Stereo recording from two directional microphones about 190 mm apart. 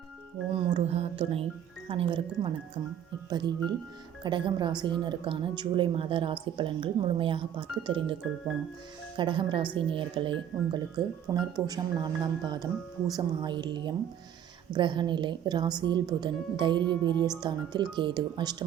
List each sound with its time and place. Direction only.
0.5 s speech: 30° right (ahead or behind)
9.1 s speech: 25° right (ahead or behind)